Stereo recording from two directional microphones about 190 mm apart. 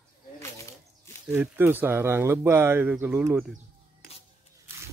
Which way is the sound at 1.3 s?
10° right (ahead or behind).